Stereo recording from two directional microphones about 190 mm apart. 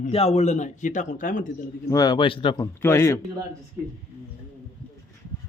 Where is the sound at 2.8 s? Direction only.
15° left (ahead or behind).